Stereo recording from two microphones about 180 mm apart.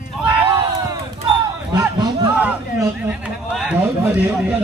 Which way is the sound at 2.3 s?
10° right (ahead or behind).